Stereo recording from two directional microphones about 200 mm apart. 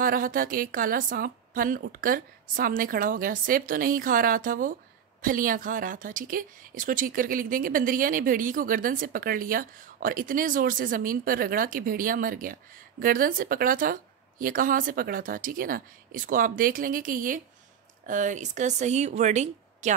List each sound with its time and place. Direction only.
0.0 s speech: 45° right (ahead or behind)